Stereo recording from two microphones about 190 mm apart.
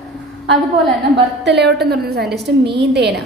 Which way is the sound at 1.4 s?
65° right (ahead or behind).